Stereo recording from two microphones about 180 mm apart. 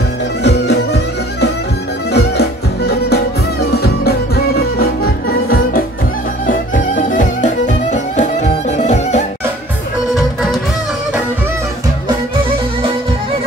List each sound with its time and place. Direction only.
0.4 s music: 65° left (ahead or behind); by 9.2 s 40° left (ahead or behind)
10.1 s music: centre (ahead or behind)